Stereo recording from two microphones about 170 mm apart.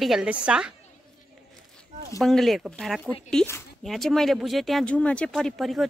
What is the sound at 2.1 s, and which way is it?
Speech, centre (ahead or behind).